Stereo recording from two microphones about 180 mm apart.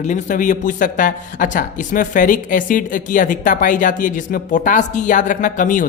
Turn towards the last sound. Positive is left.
turn(degrees=45)  # may be behind; listen again after turning